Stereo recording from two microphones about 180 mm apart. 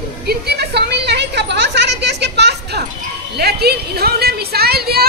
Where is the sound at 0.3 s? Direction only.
65° right (ahead or behind).